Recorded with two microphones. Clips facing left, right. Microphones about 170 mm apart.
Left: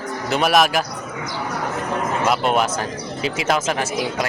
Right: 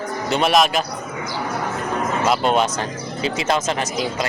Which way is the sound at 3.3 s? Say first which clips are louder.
Even; 5° left (ahead or behind).